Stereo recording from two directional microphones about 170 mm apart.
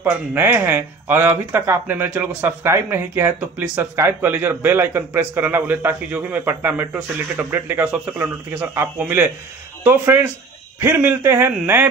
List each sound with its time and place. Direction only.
0.0 s speech: 15° right (ahead or behind)